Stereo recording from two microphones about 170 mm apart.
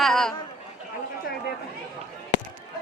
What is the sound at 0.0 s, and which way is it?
Chatter, 5° left (ahead or behind).